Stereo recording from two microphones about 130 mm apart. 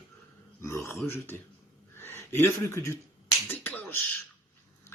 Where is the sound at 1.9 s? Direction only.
20° left (ahead or behind).